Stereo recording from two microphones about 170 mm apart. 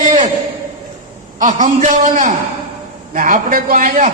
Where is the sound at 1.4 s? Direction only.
50° right (ahead or behind).